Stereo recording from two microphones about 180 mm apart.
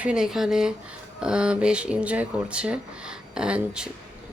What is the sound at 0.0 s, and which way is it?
Speech, 5° right (ahead or behind).